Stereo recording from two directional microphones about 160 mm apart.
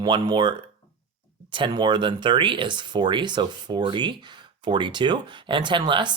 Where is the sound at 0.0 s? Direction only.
30° right (ahead or behind).